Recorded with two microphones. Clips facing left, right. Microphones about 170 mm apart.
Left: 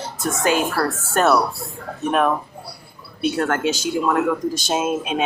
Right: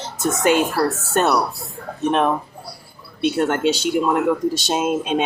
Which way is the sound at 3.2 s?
20° right (ahead or behind).